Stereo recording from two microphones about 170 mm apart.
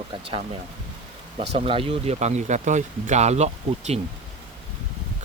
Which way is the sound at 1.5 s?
35° right (ahead or behind).